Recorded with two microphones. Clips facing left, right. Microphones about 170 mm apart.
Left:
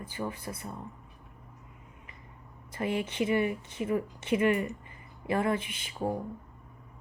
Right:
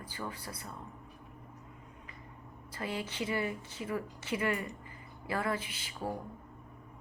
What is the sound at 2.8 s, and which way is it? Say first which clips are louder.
A woman's voice: left 7 dB; 20° left (ahead or behind).